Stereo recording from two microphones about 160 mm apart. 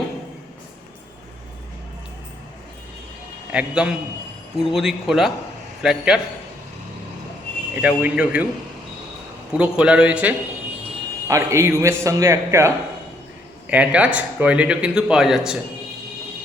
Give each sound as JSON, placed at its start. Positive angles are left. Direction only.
{"t": 3.5, "sound": "speech", "side_deg": -5}
{"t": 7.8, "sound": "a man's voice", "side_deg": -10}
{"t": 9.5, "sound": "a man's voice", "side_deg": -5}